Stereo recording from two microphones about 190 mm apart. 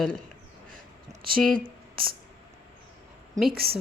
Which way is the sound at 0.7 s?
45° right (ahead or behind).